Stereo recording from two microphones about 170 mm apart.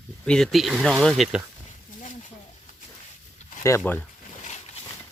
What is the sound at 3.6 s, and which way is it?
Speech, 15° left (ahead or behind).